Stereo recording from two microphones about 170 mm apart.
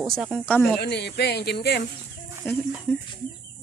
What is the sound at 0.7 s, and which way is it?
Speech, 80° left.